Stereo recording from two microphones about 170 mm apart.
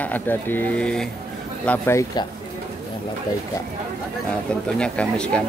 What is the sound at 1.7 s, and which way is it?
Speech, 15° left (ahead or behind).